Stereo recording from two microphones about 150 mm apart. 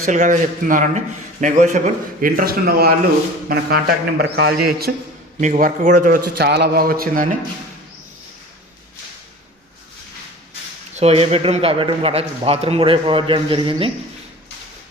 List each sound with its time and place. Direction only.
0.1 s a man's voice: 55° right (ahead or behind); by 4.9 s 90° right
5.4 s a man's voice: 60° right (ahead or behind)
10.9 s a man's voice: 45° right (ahead or behind)